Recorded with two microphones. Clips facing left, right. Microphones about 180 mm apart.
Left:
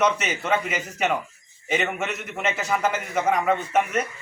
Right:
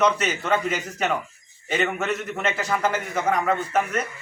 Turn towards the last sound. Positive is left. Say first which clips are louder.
# left 1 dB
turn(degrees=10)  # may be behind; listen again after turning